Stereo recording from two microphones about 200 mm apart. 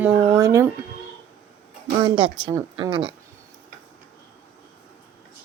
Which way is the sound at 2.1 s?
25° right (ahead or behind).